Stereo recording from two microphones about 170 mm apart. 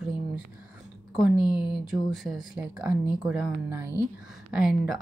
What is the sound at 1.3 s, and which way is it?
Speech, 25° left (ahead or behind).